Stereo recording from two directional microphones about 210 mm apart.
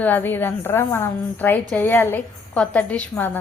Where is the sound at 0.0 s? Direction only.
10° left (ahead or behind).